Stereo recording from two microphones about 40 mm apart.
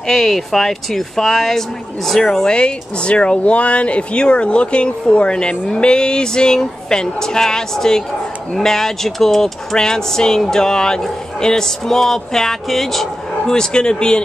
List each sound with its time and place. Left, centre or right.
0.0 s speech: centre
2.4 s speech: left; by 13.1 s centre
13.5 s speech: centre